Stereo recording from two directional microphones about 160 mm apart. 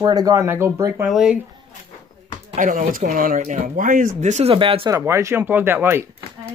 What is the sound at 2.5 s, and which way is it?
Speech, 55° right (ahead or behind).